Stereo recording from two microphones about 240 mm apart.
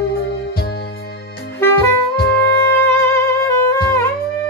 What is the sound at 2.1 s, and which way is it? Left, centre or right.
Music, left.